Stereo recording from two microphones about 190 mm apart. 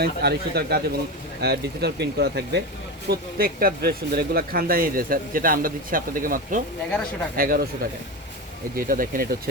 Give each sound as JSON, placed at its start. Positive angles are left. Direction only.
{"t": 0.0, "sound": "speech", "side_deg": -55}
{"t": 8.7, "sound": "speech", "side_deg": -50}